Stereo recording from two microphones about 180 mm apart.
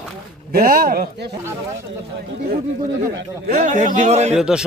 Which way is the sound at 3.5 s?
45° right (ahead or behind).